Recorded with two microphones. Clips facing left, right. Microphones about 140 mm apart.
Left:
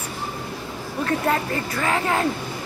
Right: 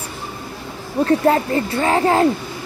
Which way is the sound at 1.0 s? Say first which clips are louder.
Right 7 dB; 30° right (ahead or behind).